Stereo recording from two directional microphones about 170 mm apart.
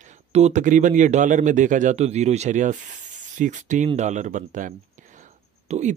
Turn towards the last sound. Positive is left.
turn(degrees=-45)  # may be behind; listen again after turning